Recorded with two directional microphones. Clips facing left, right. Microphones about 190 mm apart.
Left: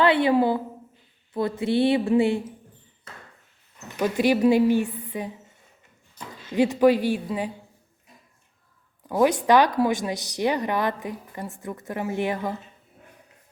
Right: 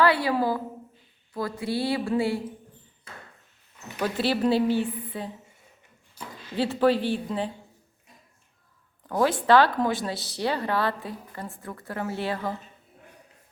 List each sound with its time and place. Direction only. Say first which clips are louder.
0.0 s a woman's voice: left 3 dB; 20° left (ahead or behind)
4.0 s a woman's voice: left 5 dB; 15° left (ahead or behind)
6.2 s a sound: left 1 dB; 10° right (ahead or behind)
6.6 s a woman's voice: left 4 dB; 15° left (ahead or behind)
9.0 s a woman's voice: left 2 dB; 15° left (ahead or behind)